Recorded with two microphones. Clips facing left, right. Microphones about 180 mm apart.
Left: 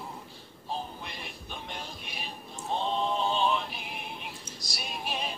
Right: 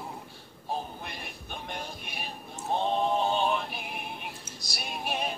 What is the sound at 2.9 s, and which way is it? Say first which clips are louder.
Synthetic singing: right 2 dB; 55° right (ahead or behind).